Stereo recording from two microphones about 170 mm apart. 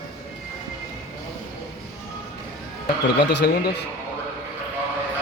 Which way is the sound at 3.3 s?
80° left.